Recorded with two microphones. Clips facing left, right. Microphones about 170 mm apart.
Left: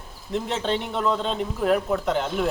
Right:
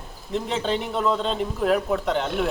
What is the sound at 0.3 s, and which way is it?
Speech, centre (ahead or behind).